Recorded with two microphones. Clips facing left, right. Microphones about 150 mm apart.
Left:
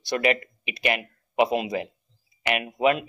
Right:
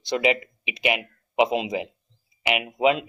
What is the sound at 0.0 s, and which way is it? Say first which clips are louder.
Speech: right 1 dB; 20° right (ahead or behind).